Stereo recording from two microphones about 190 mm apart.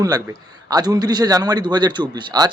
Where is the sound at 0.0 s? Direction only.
20° right (ahead or behind).